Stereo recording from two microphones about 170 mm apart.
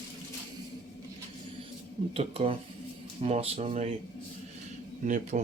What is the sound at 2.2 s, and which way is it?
Speech, 35° right (ahead or behind).